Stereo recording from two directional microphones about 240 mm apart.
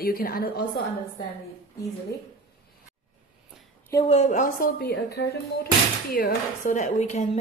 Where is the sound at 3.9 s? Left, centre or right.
Left.